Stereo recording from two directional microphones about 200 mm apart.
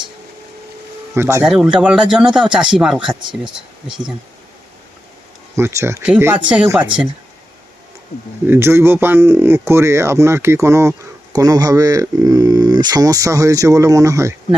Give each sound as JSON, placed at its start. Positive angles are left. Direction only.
{"t": 1.1, "sound": "speech", "side_deg": -10}
{"t": 5.5, "sound": "speech", "side_deg": -15}
{"t": 8.4, "sound": "speech", "side_deg": -10}